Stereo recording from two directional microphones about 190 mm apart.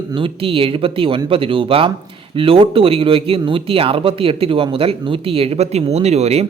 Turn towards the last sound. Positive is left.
turn(degrees=-35)  # may be behind; listen again after turning